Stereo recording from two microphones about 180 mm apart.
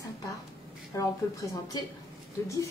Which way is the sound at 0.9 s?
20° left (ahead or behind).